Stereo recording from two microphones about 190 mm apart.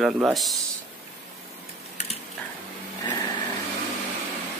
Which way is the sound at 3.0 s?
20° left (ahead or behind).